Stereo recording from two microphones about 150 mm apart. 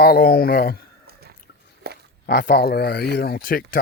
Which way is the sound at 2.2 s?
90° left.